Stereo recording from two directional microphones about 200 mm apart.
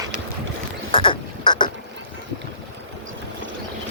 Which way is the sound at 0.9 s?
25° left (ahead or behind).